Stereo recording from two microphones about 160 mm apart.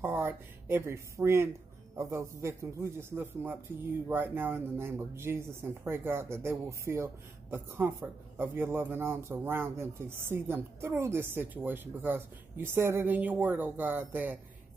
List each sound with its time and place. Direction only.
0.0 s speech: 15° right (ahead or behind)